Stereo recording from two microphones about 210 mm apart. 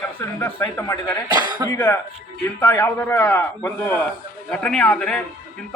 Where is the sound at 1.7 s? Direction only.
10° left (ahead or behind).